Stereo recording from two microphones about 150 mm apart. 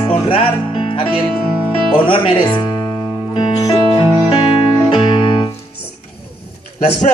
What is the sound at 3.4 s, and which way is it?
Music, 30° left (ahead or behind).